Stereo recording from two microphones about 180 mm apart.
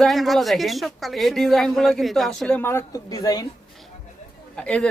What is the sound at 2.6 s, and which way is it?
Speech, 15° left (ahead or behind).